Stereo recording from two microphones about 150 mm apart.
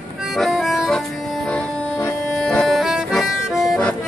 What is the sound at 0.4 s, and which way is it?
Music, centre (ahead or behind).